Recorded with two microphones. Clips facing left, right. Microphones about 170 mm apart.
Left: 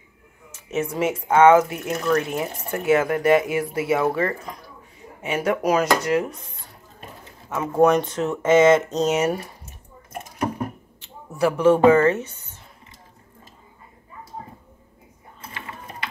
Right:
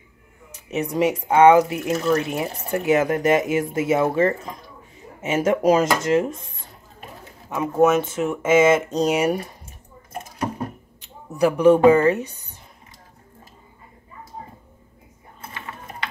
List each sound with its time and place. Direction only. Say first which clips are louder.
0.5 s speech: even; 15° right (ahead or behind)
1.9 s speech: right 1 dB; 25° right (ahead or behind)
7.4 s speech: right 2 dB; 15° right (ahead or behind)
7.8 s speech: even; 5° right (ahead or behind)
11.0 s speech: right 2 dB; 15° right (ahead or behind)